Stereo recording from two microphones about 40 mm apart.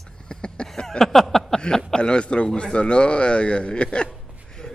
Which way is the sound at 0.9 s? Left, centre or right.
Centre.